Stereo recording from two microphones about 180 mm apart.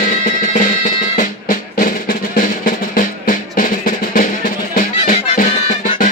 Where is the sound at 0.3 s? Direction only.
45° left (ahead or behind).